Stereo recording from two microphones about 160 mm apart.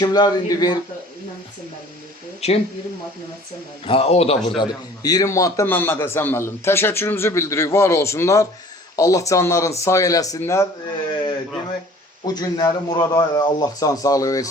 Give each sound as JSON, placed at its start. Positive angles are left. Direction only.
{"t": 0.0, "sound": "a man's voice", "side_deg": 25}
{"t": 2.4, "sound": "speech", "side_deg": 40}
{"t": 3.8, "sound": "a man's voice", "side_deg": 40}
{"t": 4.4, "sound": "a man's voice", "side_deg": 30}
{"t": 12.2, "sound": "a man's voice", "side_deg": 25}